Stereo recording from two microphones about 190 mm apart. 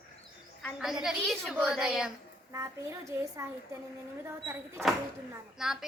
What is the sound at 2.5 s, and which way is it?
Speech, 15° right (ahead or behind).